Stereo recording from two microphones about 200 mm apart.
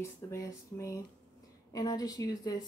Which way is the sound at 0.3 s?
15° left (ahead or behind).